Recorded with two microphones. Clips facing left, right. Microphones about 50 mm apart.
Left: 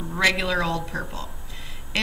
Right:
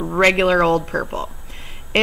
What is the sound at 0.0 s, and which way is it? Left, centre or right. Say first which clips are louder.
A woman's voice: right 7 dB; right.